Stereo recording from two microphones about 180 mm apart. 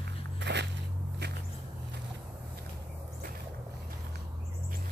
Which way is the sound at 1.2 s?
70° right (ahead or behind).